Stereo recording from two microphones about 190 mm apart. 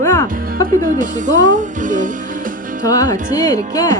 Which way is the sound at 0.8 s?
45° right (ahead or behind).